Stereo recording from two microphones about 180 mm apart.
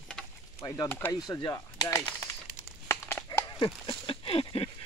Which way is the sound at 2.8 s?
15° left (ahead or behind).